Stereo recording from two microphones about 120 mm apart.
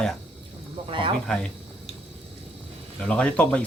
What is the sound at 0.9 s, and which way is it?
Speech, 45° right (ahead or behind).